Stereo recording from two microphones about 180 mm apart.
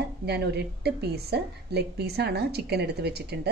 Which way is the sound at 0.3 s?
65° right (ahead or behind).